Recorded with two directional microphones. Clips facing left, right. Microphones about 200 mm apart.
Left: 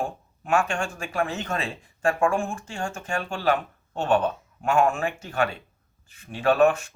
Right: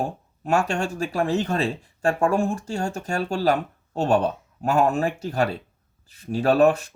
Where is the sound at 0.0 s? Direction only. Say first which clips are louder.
Right 3 dB; 40° right (ahead or behind).